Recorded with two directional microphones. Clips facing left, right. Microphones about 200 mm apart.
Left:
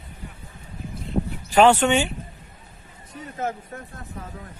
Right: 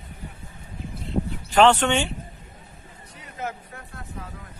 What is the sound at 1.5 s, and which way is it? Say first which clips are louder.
Speech: left 2 dB; 10° left (ahead or behind).